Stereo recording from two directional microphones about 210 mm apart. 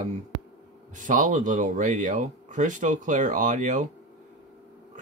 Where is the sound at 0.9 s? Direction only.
35° right (ahead or behind).